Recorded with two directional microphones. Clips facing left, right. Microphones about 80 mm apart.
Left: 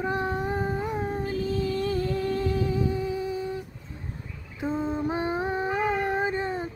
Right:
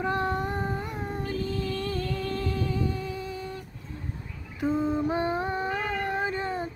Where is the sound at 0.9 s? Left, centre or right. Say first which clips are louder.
Left 3 dB; centre.